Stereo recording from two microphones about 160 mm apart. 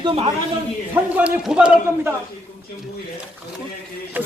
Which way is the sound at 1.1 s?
5° right (ahead or behind).